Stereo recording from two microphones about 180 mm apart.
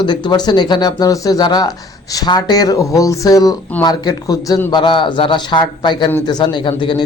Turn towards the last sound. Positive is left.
turn(degrees=25)  # may be behind; listen again after turning